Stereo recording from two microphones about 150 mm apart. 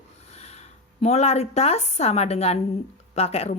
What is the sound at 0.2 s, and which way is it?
Speech, 45° left (ahead or behind).